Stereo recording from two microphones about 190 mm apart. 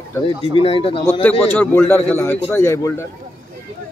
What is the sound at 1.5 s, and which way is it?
Speech, 10° left (ahead or behind).